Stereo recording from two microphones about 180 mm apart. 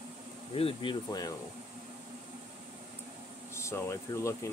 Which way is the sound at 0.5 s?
30° left (ahead or behind).